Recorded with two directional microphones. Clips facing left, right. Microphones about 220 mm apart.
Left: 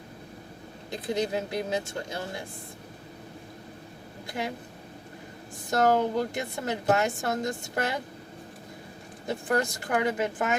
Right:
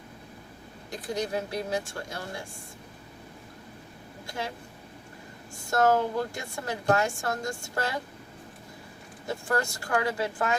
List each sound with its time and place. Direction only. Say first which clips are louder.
0.9 s speech: left 3 dB; 20° left (ahead or behind)
5.7 s speech: left 1 dB; 20° left (ahead or behind)
9.2 s speech: left 2 dB; 20° left (ahead or behind)